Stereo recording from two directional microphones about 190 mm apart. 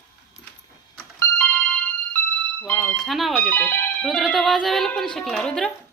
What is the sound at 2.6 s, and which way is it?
Speech, 5° left (ahead or behind).